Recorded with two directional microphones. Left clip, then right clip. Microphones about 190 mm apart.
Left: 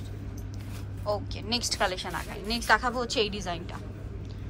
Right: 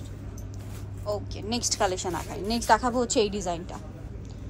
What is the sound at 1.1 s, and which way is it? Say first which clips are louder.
A woman's voice: left 1 dB; 20° right (ahead or behind).